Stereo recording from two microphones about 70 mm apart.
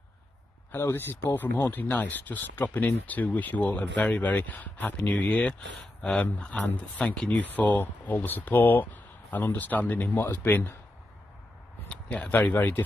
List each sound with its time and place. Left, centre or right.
0.9 s speech: left
11.9 s speech: centre